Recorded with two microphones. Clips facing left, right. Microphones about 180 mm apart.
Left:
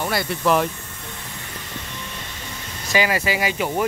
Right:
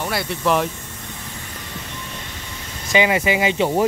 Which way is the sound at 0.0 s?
Centre (ahead or behind).